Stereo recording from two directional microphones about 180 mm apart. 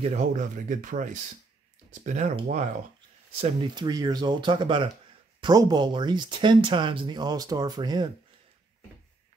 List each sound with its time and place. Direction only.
0.0 s speech: 40° right (ahead or behind)
3.3 s speech: 30° right (ahead or behind)